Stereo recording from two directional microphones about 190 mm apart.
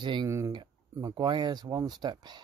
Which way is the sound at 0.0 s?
25° right (ahead or behind).